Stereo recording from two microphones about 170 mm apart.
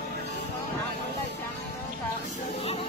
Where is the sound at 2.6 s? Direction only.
35° left (ahead or behind).